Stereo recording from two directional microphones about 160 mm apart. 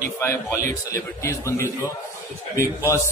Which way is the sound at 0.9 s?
20° left (ahead or behind).